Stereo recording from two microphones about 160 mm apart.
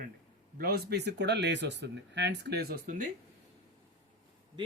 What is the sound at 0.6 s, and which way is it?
Speech, 80° right.